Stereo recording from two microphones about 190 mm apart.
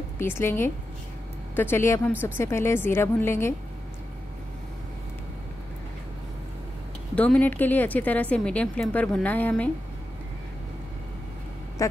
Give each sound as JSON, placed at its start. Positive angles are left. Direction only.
{"t": 0.2, "sound": "a woman's voice", "side_deg": 10}
{"t": 7.2, "sound": "a woman's voice", "side_deg": 10}
{"t": 11.8, "sound": "quack", "side_deg": 15}